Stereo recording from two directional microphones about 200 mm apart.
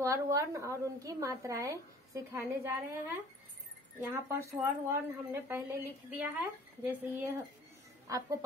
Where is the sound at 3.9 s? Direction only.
15° right (ahead or behind).